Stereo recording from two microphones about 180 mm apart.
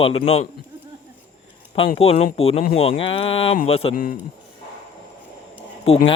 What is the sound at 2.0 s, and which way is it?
Speech, 35° left (ahead or behind).